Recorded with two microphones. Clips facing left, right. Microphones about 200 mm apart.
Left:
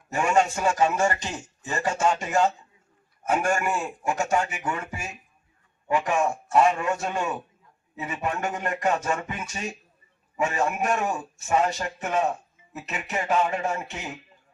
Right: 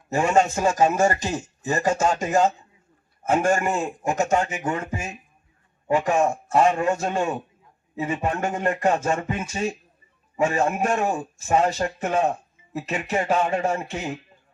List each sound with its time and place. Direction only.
0.1 s a man's voice: 40° right (ahead or behind)
3.2 s speech: 25° right (ahead or behind)
3.5 s speech: 40° right (ahead or behind)
4.3 s speech: 25° right (ahead or behind)
5.9 s a man's voice: 40° right (ahead or behind)
9.0 s speech: 25° right (ahead or behind)
9.2 s a man's voice: 40° right (ahead or behind)
10.4 s speech: 25° right (ahead or behind)
11.2 s a man's voice: 40° right (ahead or behind)